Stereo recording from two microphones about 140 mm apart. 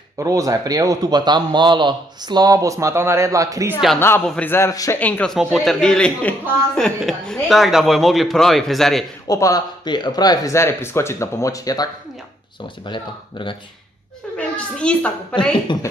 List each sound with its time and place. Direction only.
0.2 s a man's voice: 25° right (ahead or behind)
4.0 s a man's voice: 15° left (ahead or behind)
4.9 s a man's voice: 10° left (ahead or behind)
5.3 s a man's voice: centre (ahead or behind)
9.3 s speech: 25° left (ahead or behind)
14.3 s a child's voice: 5° left (ahead or behind)
15.7 s speech: 35° left (ahead or behind)